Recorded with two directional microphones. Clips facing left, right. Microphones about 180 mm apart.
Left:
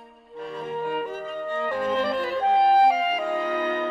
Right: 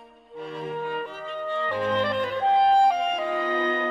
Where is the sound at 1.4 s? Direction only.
45° left (ahead or behind).